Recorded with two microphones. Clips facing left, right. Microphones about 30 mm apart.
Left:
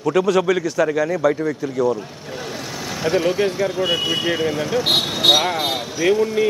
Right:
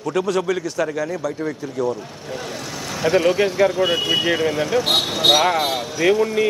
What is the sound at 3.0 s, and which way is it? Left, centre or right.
Speech, centre.